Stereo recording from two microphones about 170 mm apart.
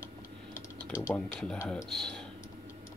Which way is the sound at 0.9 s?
15° left (ahead or behind).